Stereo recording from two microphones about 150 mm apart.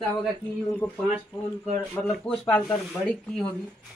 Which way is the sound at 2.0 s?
10° left (ahead or behind).